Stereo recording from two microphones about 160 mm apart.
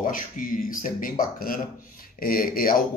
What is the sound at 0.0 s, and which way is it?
A man's voice, 60° left (ahead or behind).